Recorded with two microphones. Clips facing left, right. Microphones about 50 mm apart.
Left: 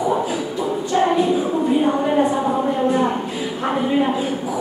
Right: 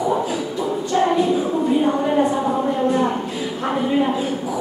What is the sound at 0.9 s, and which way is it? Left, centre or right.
Music, centre.